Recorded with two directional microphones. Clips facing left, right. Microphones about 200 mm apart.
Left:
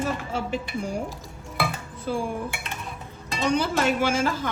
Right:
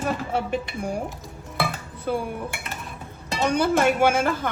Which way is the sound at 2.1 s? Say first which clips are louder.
Right 2 dB; 60° right (ahead or behind).